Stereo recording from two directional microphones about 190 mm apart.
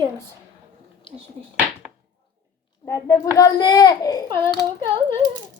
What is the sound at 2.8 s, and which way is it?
A woman's voice, 15° left (ahead or behind).